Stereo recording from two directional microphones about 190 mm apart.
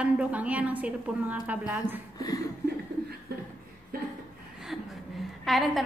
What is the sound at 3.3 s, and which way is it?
Chuckle, 60° right (ahead or behind).